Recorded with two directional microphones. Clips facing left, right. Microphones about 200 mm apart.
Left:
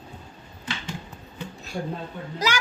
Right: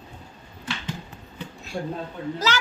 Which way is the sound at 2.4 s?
15° left (ahead or behind).